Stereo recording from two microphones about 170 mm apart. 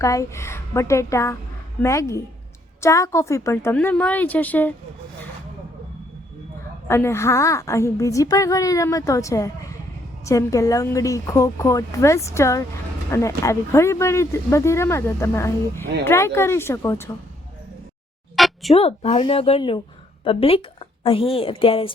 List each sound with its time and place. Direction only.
0.0 s speech: 20° left (ahead or behind)
6.8 s a woman's voice: 15° left (ahead or behind)
18.3 s a sound: centre (ahead or behind)
18.7 s a woman's voice: 35° left (ahead or behind)